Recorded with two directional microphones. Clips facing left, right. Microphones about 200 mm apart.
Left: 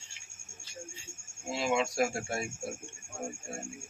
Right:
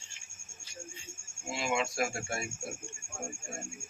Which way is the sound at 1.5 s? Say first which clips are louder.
Left 3 dB; 35° left (ahead or behind).